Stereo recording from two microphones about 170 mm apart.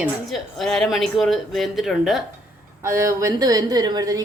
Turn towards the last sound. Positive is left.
turn(degrees=-25)  # may be behind; listen again after turning